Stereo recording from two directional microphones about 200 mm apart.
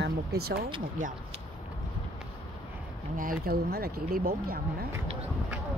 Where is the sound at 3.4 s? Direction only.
50° right (ahead or behind).